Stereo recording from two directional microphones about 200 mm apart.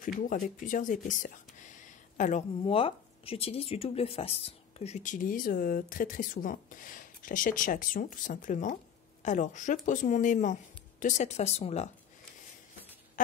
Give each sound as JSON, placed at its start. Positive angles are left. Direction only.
{"t": 0.0, "sound": "a woman's voice", "side_deg": 40}
{"t": 2.6, "sound": "speech", "side_deg": 30}